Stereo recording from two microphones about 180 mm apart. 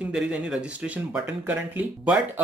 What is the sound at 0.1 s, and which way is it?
Speech, 5° right (ahead or behind).